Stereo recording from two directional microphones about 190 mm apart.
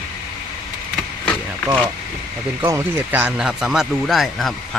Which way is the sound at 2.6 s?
15° right (ahead or behind).